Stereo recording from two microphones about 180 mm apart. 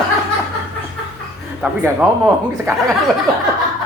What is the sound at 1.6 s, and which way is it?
Speech, 10° right (ahead or behind).